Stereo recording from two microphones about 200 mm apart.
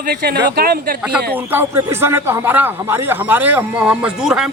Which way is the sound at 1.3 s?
10° right (ahead or behind).